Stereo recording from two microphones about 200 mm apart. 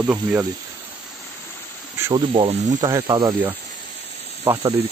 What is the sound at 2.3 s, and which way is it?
Speech, 25° right (ahead or behind).